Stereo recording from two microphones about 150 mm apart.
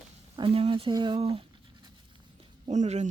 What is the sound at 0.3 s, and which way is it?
Speech, 35° right (ahead or behind).